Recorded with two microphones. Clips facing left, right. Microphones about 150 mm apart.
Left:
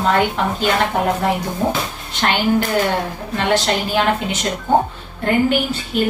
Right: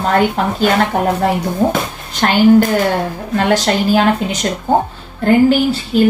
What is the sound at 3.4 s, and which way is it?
A woman's voice, 40° right (ahead or behind).